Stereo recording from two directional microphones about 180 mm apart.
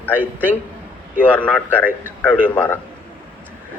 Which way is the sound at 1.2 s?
10° left (ahead or behind).